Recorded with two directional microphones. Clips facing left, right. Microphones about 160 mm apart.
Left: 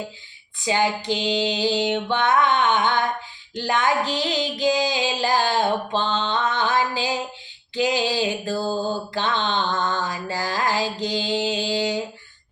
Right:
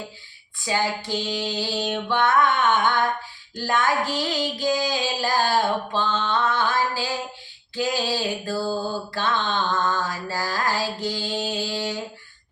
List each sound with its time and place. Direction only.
0.6 s a sound: 20° left (ahead or behind)
3.5 s music: 20° left (ahead or behind)
7.8 s mantra: 20° left (ahead or behind)